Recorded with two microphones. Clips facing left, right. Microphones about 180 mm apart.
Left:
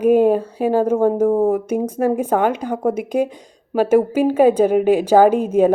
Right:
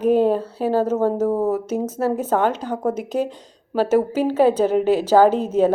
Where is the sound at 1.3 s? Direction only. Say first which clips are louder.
Left 4 dB; 50° left (ahead or behind).